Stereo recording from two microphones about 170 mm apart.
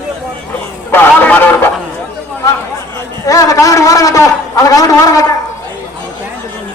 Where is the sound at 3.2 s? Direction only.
20° left (ahead or behind).